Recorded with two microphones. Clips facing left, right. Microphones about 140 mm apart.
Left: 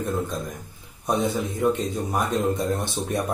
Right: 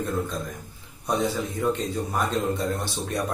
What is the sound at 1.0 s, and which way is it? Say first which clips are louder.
A man's voice: left 2 dB; 20° left (ahead or behind).